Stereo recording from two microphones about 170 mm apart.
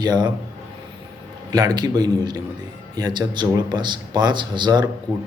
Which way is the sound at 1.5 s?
25° right (ahead or behind).